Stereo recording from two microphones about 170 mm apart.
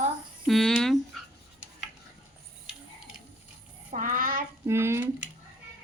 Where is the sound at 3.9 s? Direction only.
50° right (ahead or behind).